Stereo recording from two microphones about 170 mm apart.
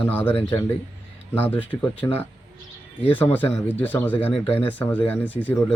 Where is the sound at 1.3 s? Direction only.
10° left (ahead or behind).